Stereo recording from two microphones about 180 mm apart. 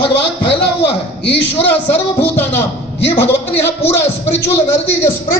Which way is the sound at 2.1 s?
10° left (ahead or behind).